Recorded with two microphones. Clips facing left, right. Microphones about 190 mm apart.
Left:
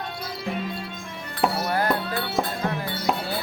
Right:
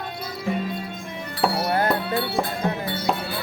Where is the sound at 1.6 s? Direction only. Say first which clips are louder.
Right 2 dB; 25° right (ahead or behind).